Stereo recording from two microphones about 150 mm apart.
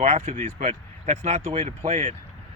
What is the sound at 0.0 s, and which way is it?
Speech, 45° right (ahead or behind).